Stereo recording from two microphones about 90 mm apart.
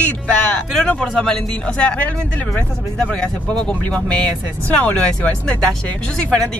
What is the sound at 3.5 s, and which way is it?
Speech, 10° left (ahead or behind).